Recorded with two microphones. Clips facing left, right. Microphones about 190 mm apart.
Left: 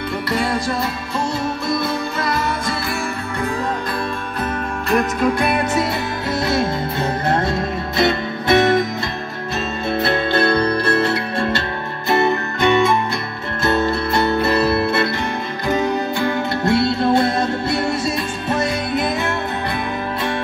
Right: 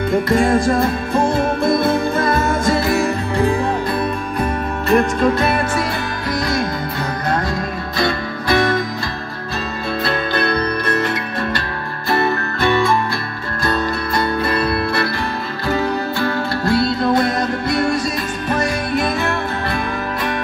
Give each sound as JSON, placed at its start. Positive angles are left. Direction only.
{"t": 0.1, "sound": "music", "side_deg": -50}
{"t": 4.8, "sound": "music", "side_deg": 0}
{"t": 5.4, "sound": "music", "side_deg": 15}
{"t": 10.0, "sound": "music", "side_deg": 25}